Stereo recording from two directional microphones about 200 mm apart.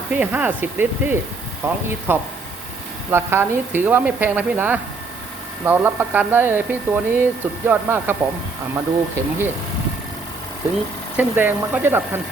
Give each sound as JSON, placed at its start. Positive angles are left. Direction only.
{"t": 0.1, "sound": "speech", "side_deg": -5}
{"t": 11.2, "sound": "speech", "side_deg": -10}